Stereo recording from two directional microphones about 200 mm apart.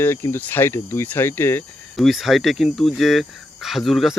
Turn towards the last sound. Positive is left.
turn(degrees=0)  # may be behind; listen again after turning